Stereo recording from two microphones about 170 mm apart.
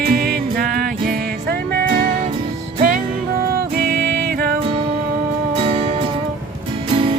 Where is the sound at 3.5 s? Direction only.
65° right (ahead or behind).